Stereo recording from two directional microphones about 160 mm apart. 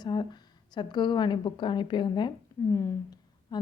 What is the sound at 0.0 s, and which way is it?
A woman's voice, 25° left (ahead or behind).